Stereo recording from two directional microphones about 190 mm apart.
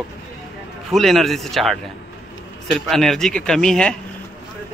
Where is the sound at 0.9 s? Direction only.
Centre (ahead or behind).